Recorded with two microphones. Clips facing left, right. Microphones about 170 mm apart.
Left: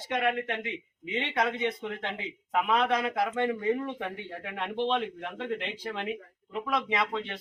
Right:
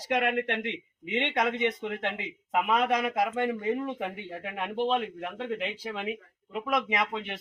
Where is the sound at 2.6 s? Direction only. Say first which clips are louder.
Even; 10° right (ahead or behind).